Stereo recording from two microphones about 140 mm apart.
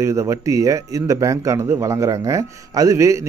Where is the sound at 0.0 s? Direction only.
20° right (ahead or behind).